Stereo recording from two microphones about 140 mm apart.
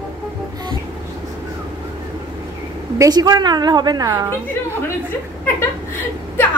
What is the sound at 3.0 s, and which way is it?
A woman's voice, 30° right (ahead or behind).